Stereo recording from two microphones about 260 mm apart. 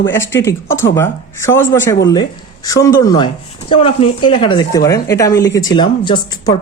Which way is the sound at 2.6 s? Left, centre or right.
Centre.